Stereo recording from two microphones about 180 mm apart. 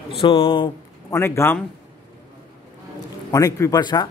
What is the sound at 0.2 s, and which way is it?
Speech, 30° left (ahead or behind).